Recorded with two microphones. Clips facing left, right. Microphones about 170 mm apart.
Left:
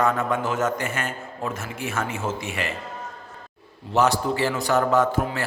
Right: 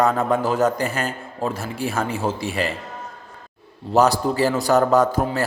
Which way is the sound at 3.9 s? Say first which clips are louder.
Right 4 dB; 35° right (ahead or behind).